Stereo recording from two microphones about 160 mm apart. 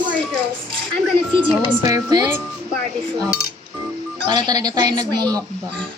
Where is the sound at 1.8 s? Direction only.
25° right (ahead or behind).